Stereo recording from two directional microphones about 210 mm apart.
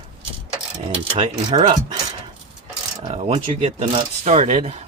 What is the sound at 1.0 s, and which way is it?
Speech, 30° right (ahead or behind).